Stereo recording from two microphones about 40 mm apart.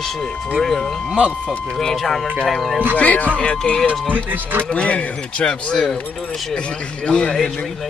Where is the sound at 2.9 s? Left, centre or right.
Left.